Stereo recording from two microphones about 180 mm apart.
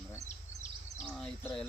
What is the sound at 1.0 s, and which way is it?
Speech, 5° left (ahead or behind).